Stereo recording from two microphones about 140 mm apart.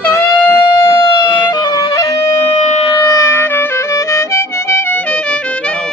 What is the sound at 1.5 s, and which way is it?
Music, 30° left (ahead or behind).